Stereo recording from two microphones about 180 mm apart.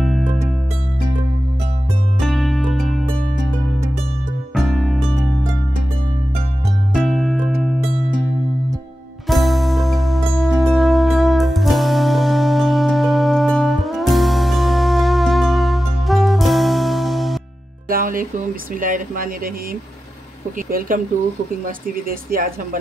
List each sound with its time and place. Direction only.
2.1 s music: centre (ahead or behind)
4.6 s music: centre (ahead or behind)
6.9 s music: centre (ahead or behind)
9.3 s music: centre (ahead or behind)
17.8 s speech: 50° right (ahead or behind)
20.5 s speech: 50° right (ahead or behind)